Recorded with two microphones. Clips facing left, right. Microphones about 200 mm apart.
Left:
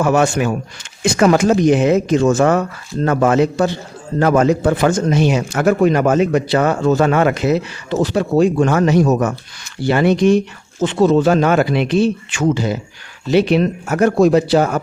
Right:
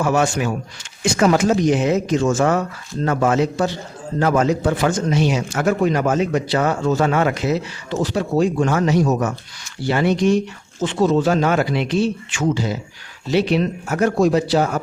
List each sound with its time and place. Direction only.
0.0 s speech: 60° left (ahead or behind)